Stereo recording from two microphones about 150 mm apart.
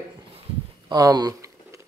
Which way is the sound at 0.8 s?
25° right (ahead or behind).